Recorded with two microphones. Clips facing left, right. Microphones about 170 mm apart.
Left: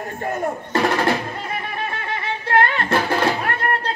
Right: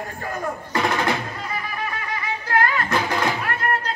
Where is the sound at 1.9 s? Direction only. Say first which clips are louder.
Left 2 dB; 25° left (ahead or behind).